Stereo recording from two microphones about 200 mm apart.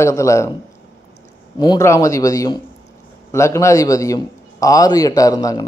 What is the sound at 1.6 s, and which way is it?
A man's voice, 15° left (ahead or behind).